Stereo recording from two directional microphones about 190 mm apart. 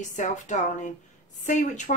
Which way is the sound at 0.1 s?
40° left (ahead or behind).